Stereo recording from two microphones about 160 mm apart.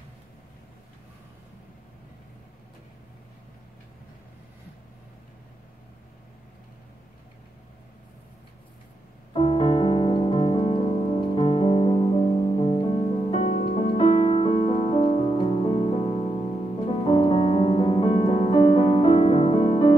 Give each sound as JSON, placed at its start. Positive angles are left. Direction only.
{"t": 9.3, "sound": "music", "side_deg": 35}